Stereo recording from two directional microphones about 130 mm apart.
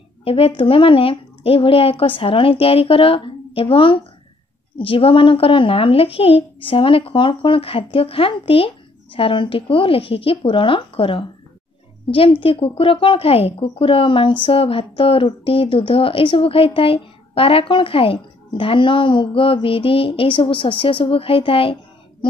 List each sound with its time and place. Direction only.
0.2 s a woman's voice: 45° left (ahead or behind)